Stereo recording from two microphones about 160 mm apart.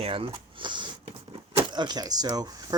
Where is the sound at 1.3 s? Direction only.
30° right (ahead or behind).